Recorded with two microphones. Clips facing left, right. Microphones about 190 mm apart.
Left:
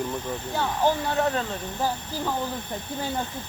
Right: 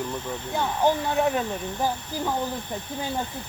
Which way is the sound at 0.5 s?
15° right (ahead or behind).